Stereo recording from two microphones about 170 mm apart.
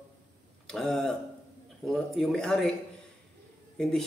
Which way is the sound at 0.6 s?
5° left (ahead or behind).